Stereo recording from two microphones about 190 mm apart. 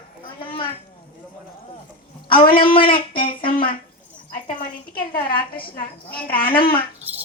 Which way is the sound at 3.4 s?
50° left (ahead or behind).